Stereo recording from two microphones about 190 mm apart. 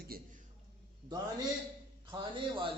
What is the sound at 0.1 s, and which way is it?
Speech, 50° right (ahead or behind).